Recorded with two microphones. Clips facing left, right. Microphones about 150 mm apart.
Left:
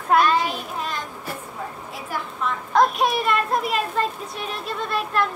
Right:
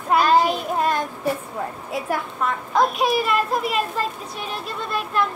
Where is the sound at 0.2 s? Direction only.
40° right (ahead or behind).